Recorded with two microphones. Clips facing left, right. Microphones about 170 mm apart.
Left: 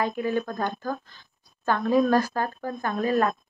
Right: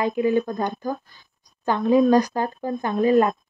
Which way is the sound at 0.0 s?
15° right (ahead or behind).